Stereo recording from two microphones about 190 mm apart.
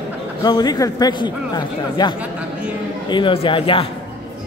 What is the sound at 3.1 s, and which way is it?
Speech, 30° left (ahead or behind).